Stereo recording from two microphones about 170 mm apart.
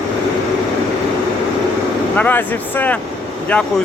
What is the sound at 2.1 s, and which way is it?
Speech, 10° left (ahead or behind).